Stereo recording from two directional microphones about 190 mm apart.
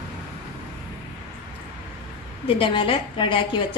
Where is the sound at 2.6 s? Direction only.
25° left (ahead or behind).